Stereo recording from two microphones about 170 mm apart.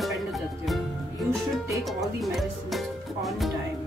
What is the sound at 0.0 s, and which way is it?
Music, centre (ahead or behind).